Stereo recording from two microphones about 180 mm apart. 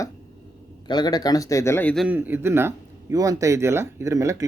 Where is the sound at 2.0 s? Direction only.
10° right (ahead or behind).